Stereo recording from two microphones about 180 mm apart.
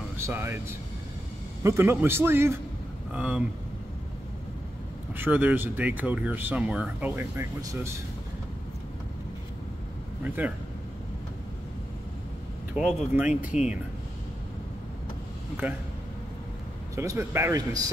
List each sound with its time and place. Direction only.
0.3 s speech: 15° right (ahead or behind)
5.1 s speech: 10° right (ahead or behind)
10.2 s speech: 10° right (ahead or behind)
12.7 s speech: 5° right (ahead or behind)
15.6 s speech: 10° right (ahead or behind)
16.9 s speech: 15° right (ahead or behind)